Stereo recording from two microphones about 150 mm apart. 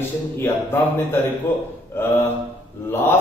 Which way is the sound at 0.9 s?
15° left (ahead or behind).